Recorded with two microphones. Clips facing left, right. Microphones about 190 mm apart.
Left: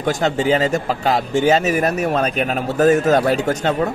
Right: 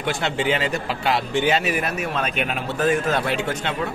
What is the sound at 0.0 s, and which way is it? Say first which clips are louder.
A man's voice: left 5 dB; 40° left (ahead or behind).